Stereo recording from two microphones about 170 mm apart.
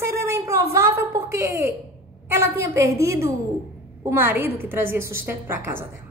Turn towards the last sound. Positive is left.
turn(degrees=-15)  # may be behind; listen again after turning